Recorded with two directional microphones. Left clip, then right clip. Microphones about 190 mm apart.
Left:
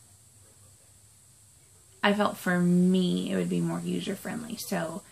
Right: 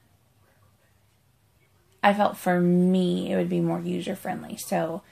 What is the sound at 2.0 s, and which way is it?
Speech, 50° right (ahead or behind).